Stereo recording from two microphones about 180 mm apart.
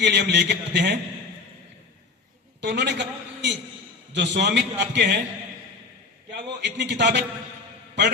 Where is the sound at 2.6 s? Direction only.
70° right (ahead or behind).